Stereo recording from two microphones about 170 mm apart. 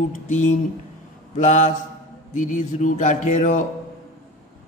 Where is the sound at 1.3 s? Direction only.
45° left (ahead or behind).